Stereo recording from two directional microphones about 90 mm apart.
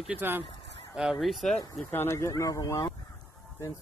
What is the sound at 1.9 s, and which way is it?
Speech, 30° left (ahead or behind).